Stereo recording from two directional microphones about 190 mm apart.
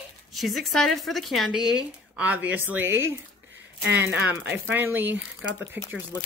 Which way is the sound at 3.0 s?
80° right.